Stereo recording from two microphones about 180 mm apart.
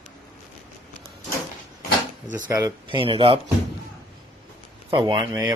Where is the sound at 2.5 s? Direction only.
20° right (ahead or behind).